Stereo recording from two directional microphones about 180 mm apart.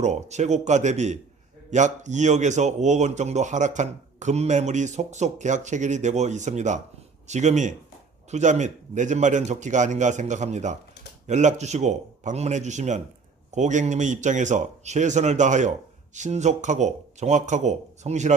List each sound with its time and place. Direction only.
0.0 s speech: 40° right (ahead or behind)